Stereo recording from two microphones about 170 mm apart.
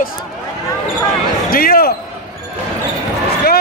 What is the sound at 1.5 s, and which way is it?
Basketball bounce, 60° left (ahead or behind).